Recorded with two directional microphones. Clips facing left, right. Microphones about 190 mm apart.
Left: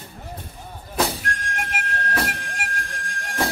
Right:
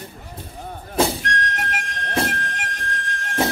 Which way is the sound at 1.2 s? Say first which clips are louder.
Right 4 dB; 10° left (ahead or behind).